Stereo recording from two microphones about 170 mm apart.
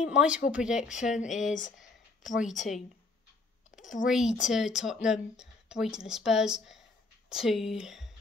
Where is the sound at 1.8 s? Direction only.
50° left (ahead or behind).